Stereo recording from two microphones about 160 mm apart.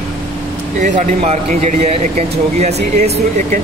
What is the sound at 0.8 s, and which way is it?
Speech, 50° right (ahead or behind).